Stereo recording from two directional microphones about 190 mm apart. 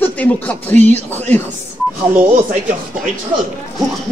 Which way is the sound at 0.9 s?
35° right (ahead or behind).